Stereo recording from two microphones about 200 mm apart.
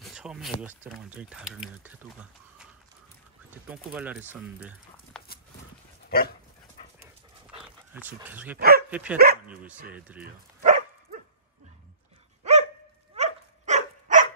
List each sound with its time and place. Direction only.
0.0 s speech: 5° right (ahead or behind)
3.4 s speech: 5° right (ahead or behind)
6.0 s dog: 50° left (ahead or behind)
7.6 s speech: 10° right (ahead or behind)
8.5 s speech: 50° right (ahead or behind)
9.9 s speech: 5° right (ahead or behind)
10.2 s dog: 40° right (ahead or behind)
12.4 s dog: 35° right (ahead or behind)